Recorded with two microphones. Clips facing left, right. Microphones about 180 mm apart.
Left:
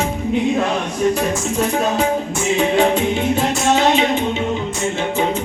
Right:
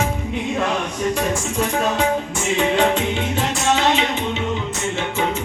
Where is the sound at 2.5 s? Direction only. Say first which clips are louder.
Left 2 dB; 10° left (ahead or behind).